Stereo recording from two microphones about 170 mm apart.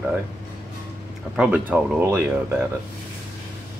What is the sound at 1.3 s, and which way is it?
Speech, 5° right (ahead or behind).